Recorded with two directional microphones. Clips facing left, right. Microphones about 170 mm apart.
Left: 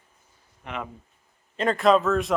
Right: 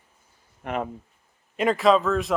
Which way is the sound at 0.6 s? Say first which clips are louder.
Right 6 dB; 45° right (ahead or behind).